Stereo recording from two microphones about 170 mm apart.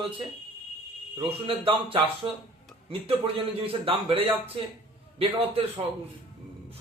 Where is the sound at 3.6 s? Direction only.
35° right (ahead or behind).